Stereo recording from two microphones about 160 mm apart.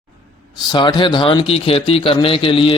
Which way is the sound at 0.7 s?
30° left (ahead or behind).